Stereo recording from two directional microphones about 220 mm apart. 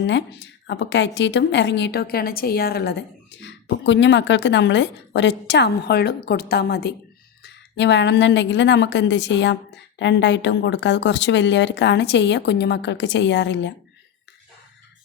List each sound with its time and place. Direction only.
0.0 s a woman's voice: 50° left (ahead or behind)